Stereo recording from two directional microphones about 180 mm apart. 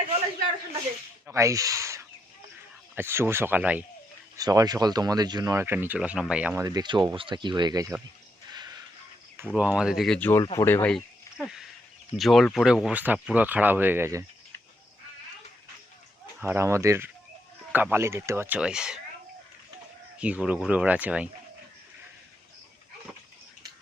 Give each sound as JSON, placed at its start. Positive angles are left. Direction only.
{"t": 1.3, "sound": "speech", "side_deg": -15}
{"t": 4.4, "sound": "speech", "side_deg": -20}
{"t": 6.7, "sound": "speech", "side_deg": -25}
{"t": 8.5, "sound": "a sound", "side_deg": -20}
{"t": 9.6, "sound": "speech", "side_deg": -5}
{"t": 10.4, "sound": "speech", "side_deg": 25}
{"t": 10.7, "sound": "speech", "side_deg": 10}
{"t": 10.9, "sound": "a sound", "side_deg": 0}
{"t": 12.1, "sound": "speech", "side_deg": 0}
{"t": 16.4, "sound": "speech", "side_deg": -15}
{"t": 20.1, "sound": "speech", "side_deg": -5}